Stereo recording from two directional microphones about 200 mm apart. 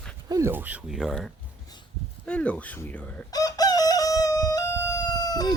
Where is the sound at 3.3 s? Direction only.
20° left (ahead or behind).